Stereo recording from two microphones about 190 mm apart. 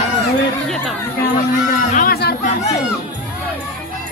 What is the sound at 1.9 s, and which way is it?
Speech, 50° left (ahead or behind).